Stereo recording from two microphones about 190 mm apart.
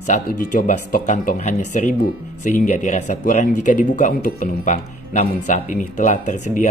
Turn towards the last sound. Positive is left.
turn(degrees=40)  # may be behind; listen again after turning